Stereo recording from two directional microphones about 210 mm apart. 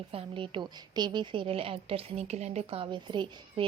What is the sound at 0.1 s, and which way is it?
A woman's voice, 25° right (ahead or behind).